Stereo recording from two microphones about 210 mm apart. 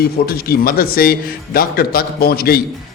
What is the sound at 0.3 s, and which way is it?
A man's voice, 45° left (ahead or behind).